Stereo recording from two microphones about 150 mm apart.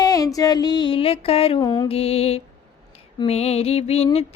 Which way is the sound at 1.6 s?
25° left (ahead or behind).